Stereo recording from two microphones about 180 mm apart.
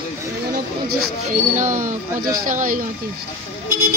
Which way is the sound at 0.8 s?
45° right (ahead or behind).